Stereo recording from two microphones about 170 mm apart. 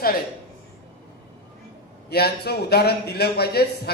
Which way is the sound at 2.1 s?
70° left (ahead or behind).